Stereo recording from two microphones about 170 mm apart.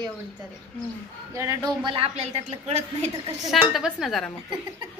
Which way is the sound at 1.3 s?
20° right (ahead or behind).